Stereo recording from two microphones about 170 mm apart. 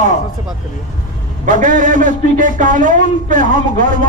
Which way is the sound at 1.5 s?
50° right (ahead or behind).